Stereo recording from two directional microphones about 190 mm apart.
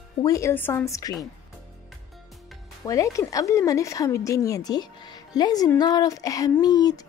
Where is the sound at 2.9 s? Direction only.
15° left (ahead or behind).